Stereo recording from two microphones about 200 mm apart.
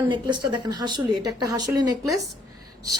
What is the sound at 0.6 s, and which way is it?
A woman's voice, 20° right (ahead or behind).